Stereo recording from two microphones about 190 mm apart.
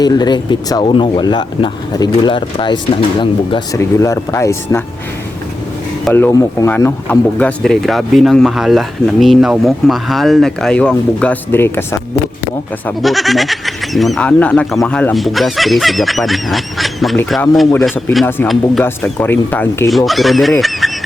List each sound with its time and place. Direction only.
0.0 s speech: 20° left (ahead or behind)
3.8 s speech: 15° left (ahead or behind)
6.1 s speech: 10° left (ahead or behind)
13.0 s speech: centre (ahead or behind)